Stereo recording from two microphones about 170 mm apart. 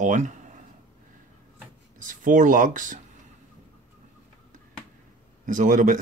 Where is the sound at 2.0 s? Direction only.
50° right (ahead or behind).